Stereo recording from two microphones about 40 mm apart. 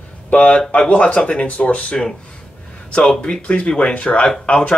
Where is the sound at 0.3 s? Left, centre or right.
Left.